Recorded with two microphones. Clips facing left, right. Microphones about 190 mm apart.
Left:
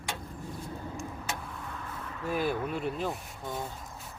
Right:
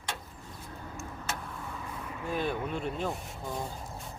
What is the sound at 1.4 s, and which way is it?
Vehicle, centre (ahead or behind).